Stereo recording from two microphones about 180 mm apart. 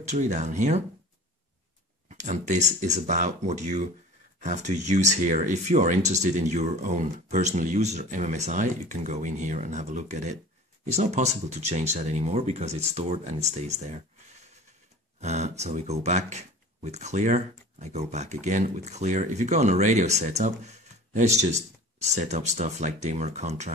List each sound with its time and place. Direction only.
0.0 s speech: 40° right (ahead or behind)
2.0 s speech: 40° right (ahead or behind)
15.1 s speech: 40° right (ahead or behind)